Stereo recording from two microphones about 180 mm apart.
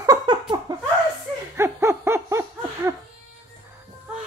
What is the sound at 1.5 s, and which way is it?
Laughter, 15° right (ahead or behind).